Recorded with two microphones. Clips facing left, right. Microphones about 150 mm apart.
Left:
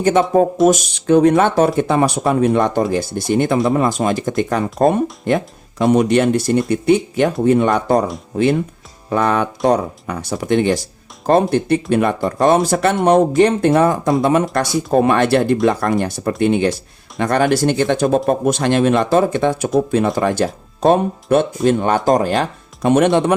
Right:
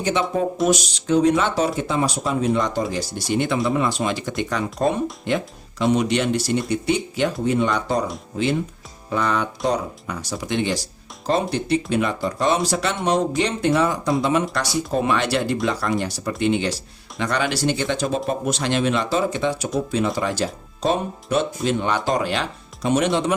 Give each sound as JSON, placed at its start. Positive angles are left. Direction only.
{"t": 0.0, "sound": "speech", "side_deg": 50}